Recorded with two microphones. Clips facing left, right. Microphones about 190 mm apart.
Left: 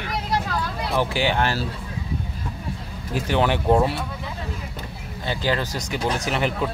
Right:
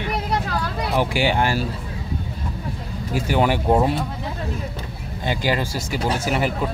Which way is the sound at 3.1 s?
10° right (ahead or behind).